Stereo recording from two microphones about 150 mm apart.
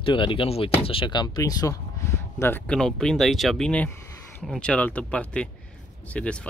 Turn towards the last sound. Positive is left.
turn(degrees=5)  # may be behind; listen again after turning